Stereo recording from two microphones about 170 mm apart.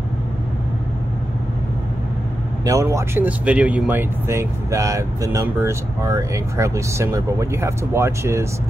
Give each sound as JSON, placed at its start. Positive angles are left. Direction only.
{"t": 2.6, "sound": "speech", "side_deg": -20}